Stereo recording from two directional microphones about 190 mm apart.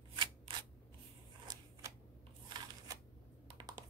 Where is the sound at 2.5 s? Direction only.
20° right (ahead or behind).